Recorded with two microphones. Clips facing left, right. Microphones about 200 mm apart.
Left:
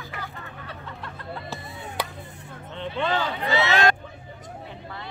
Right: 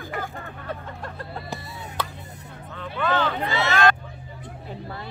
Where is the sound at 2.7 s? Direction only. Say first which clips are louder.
Left 1 dB; 25° left (ahead or behind).